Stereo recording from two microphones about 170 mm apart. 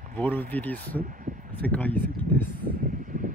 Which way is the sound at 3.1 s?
50° right (ahead or behind).